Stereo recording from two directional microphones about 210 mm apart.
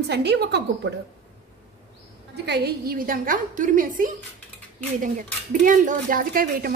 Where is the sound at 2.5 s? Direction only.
50° right (ahead or behind).